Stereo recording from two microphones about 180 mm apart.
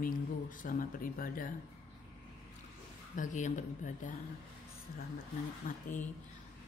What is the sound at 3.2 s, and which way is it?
Speech, 45° left (ahead or behind).